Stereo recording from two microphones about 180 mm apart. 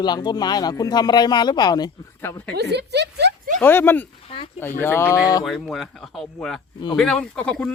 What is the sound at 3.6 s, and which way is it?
Speech, 10° left (ahead or behind).